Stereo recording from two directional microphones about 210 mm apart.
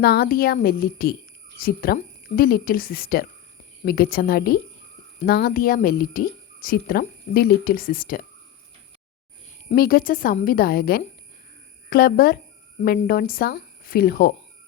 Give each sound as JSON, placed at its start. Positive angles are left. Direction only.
{"t": 0.0, "sound": "speech", "side_deg": 50}
{"t": 9.6, "sound": "speech", "side_deg": 45}